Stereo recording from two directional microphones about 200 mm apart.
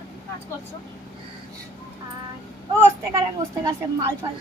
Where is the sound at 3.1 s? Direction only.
15° right (ahead or behind).